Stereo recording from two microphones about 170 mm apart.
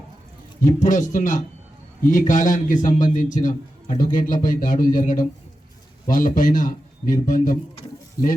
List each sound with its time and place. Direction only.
0.6 s a man's voice: 50° left (ahead or behind)